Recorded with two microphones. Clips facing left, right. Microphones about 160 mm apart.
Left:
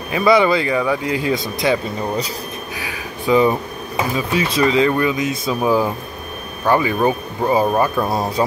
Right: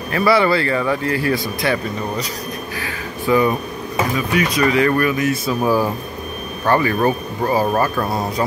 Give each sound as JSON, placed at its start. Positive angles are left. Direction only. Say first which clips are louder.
{"t": 0.1, "sound": "a man's voice", "louder": "left 1 dB", "side_deg": 15}
{"t": 8.4, "sound": "mantra", "louder": "left 2 dB", "side_deg": 20}